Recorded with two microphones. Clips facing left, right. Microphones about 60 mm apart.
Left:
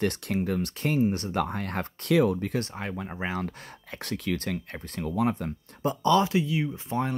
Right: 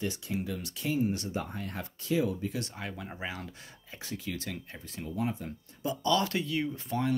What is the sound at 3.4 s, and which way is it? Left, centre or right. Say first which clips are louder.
Speech: left 9 dB; left.